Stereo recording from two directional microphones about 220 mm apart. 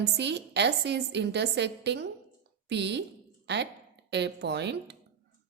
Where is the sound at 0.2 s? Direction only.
50° right (ahead or behind).